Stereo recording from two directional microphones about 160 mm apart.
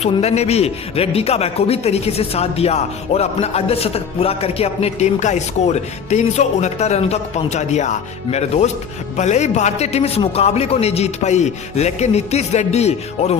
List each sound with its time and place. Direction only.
0.0 s a man's voice: 40° left (ahead or behind)